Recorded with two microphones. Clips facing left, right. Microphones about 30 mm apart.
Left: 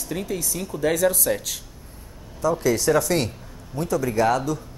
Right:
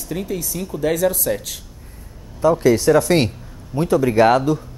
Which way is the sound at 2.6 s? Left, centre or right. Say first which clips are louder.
Right 5 dB; centre.